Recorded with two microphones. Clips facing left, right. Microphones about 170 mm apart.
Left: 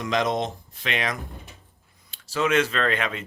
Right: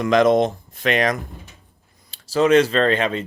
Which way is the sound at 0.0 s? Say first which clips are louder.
Right 9 dB; 55° right (ahead or behind).